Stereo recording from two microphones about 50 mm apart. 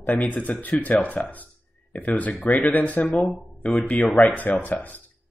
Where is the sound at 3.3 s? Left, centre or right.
Centre.